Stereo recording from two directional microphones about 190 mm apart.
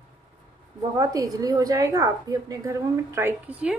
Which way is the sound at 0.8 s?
20° right (ahead or behind).